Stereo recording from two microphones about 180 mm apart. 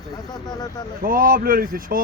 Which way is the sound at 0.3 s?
20° left (ahead or behind).